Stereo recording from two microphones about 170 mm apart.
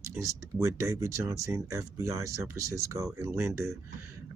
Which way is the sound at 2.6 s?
20° right (ahead or behind).